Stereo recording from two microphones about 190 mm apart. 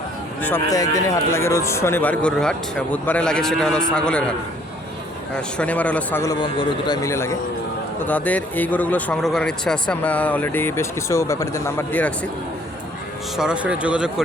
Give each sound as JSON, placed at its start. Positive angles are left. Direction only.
{"t": 0.7, "sound": "speech", "side_deg": 15}
{"t": 6.4, "sound": "speech", "side_deg": 25}
{"t": 13.3, "sound": "speech", "side_deg": -5}